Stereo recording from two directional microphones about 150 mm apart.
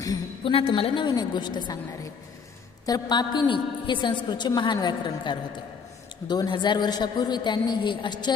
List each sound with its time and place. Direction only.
0.4 s a woman's voice: 35° left (ahead or behind)
2.8 s a woman's voice: 25° left (ahead or behind)